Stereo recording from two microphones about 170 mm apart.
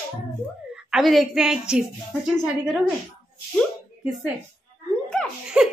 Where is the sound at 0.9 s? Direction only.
Centre (ahead or behind).